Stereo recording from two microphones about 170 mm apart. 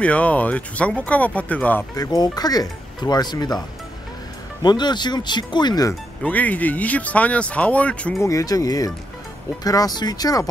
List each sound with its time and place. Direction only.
0.0 s speech: 10° left (ahead or behind)
2.0 s speech: 25° left (ahead or behind)
4.6 s speech: 25° left (ahead or behind)
6.2 s speech: 10° left (ahead or behind)
8.3 s speech: 20° left (ahead or behind)